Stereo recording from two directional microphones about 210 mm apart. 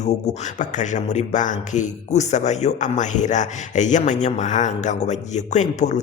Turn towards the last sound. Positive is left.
turn(degrees=35)  # may be behind; listen again after turning